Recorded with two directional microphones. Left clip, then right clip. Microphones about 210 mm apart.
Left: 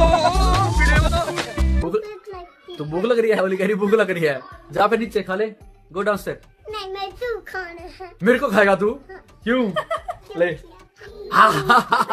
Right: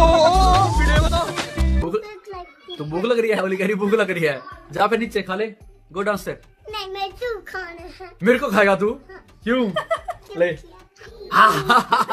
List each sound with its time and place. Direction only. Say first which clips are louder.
0.0 s music: right 3 dB; 10° right (ahead or behind)
2.9 s speech: left 1 dB; 10° left (ahead or behind)
6.7 s a child's voice: right 1 dB; 10° right (ahead or behind)
9.8 s speech: right 1 dB; 20° right (ahead or behind)
10.3 s a child's voice: even; centre (ahead or behind)
11.2 s speech: even; 10° left (ahead or behind)